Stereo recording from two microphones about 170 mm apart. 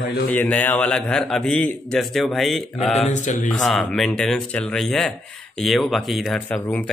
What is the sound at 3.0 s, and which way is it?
Speech, 45° left (ahead or behind).